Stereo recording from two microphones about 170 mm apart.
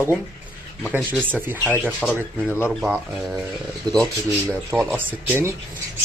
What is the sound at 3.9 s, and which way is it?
Speech, 20° right (ahead or behind).